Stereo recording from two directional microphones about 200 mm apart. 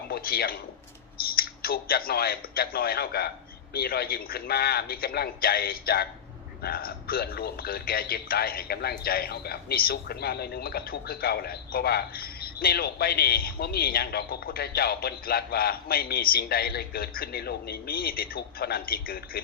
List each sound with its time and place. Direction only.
0.1 s a man's voice: 50° left (ahead or behind)